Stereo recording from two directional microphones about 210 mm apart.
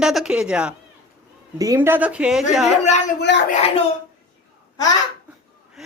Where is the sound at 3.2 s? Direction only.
55° left (ahead or behind).